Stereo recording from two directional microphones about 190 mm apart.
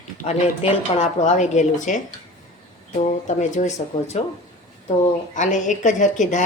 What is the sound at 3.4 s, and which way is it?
Speech, 40° left (ahead or behind).